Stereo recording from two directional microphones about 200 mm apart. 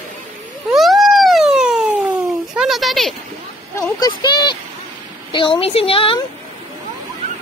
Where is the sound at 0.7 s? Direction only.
Centre (ahead or behind).